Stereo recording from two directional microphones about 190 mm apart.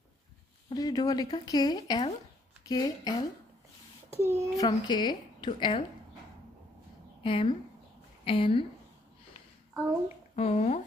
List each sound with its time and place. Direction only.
0.7 s a woman's voice: 20° left (ahead or behind)
4.2 s a child's voice: 15° right (ahead or behind)
4.6 s a woman's voice: 20° left (ahead or behind)
7.2 s a woman's voice: 30° left (ahead or behind)
10.3 s speech: 35° left (ahead or behind)